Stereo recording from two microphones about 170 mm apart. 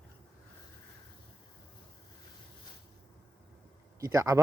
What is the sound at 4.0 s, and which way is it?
Speech, 20° right (ahead or behind).